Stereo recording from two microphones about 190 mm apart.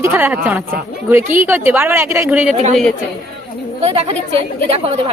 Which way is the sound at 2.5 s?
35° right (ahead or behind).